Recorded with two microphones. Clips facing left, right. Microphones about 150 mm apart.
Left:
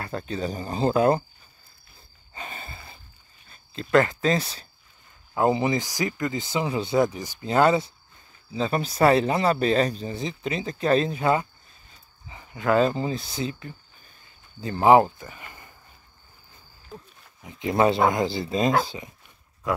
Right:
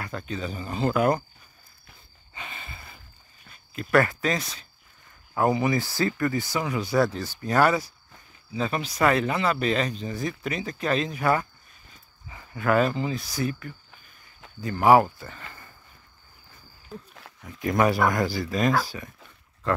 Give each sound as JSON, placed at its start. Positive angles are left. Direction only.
{"t": 0.0, "sound": "speech", "side_deg": 35}
{"t": 2.3, "sound": "a sound", "side_deg": 40}
{"t": 3.9, "sound": "speech", "side_deg": 20}
{"t": 17.4, "sound": "speech", "side_deg": 20}